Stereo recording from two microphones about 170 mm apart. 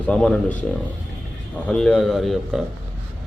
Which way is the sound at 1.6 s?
5° left (ahead or behind).